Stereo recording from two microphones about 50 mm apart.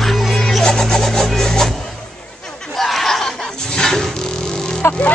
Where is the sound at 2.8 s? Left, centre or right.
Centre.